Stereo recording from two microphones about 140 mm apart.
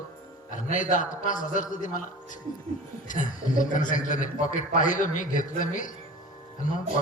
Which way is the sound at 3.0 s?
70° left (ahead or behind).